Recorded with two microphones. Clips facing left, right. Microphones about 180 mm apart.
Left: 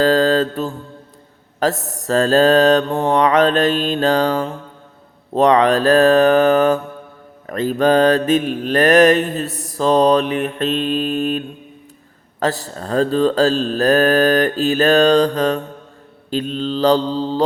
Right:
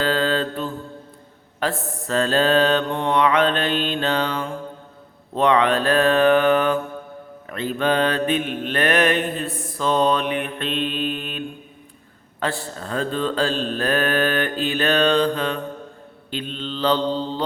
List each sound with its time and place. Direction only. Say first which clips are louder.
0.0 s mantra: left 7 dB; 40° left (ahead or behind)